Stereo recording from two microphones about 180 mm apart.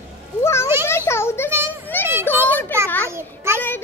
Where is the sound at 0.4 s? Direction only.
15° left (ahead or behind).